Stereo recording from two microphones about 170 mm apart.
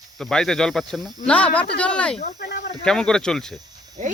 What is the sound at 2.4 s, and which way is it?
Speech, 80° left.